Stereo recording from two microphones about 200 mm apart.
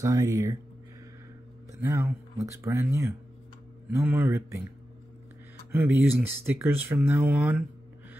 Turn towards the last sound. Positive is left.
turn(degrees=-5)  # may be behind; listen again after turning